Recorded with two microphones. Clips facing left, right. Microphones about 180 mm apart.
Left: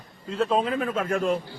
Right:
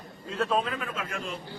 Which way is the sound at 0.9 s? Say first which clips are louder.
Left 11 dB; 50° left (ahead or behind).